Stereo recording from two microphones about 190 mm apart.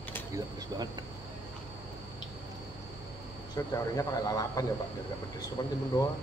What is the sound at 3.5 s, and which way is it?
Speech, 15° left (ahead or behind).